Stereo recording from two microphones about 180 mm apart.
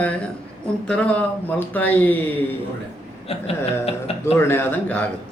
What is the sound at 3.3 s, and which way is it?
Speech, 35° left (ahead or behind).